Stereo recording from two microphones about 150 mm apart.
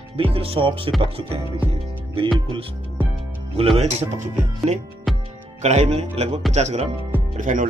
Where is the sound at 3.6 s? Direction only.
40° right (ahead or behind).